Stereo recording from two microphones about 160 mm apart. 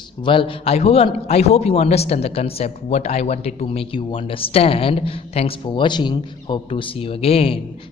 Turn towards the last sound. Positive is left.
turn(degrees=35)  # may be behind; listen again after turning